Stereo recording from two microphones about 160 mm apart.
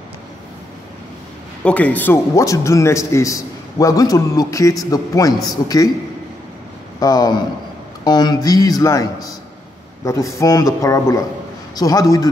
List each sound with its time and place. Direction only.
1.6 s a man's voice: 10° left (ahead or behind)
7.0 s a man's voice: 25° left (ahead or behind)